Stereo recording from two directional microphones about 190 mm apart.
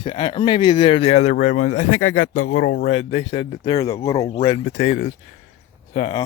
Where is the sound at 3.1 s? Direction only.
30° left (ahead or behind); by 4.3 s 15° left (ahead or behind).